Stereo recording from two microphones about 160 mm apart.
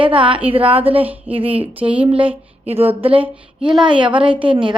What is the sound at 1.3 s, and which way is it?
A woman's voice, 35° right (ahead or behind).